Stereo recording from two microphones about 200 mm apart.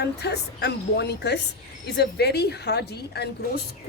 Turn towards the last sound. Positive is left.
turn(degrees=55)  # may be behind; listen again after turning